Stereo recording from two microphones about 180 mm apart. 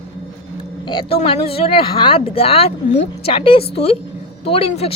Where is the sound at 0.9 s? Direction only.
30° left (ahead or behind).